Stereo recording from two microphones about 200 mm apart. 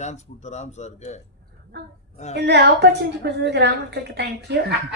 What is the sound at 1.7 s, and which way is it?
A woman's voice, 60° right (ahead or behind).